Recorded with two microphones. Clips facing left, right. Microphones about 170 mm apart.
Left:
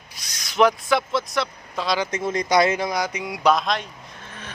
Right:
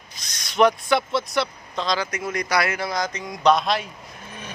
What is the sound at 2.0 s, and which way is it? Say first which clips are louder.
Speech: left 3 dB; 25° left (ahead or behind).